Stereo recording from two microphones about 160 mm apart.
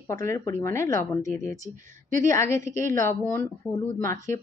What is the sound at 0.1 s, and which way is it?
Speech, 15° left (ahead or behind).